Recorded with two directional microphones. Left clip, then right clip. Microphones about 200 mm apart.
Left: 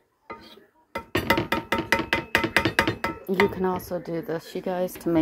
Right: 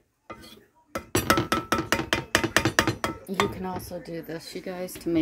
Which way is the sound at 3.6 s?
25° left (ahead or behind).